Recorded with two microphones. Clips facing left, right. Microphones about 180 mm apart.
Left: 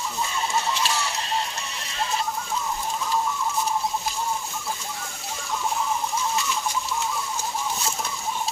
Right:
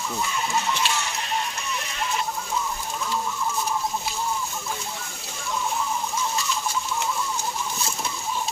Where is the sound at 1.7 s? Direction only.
30° left (ahead or behind).